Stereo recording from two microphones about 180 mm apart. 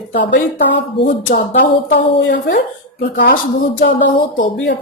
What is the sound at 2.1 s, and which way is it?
Speech, 75° left (ahead or behind).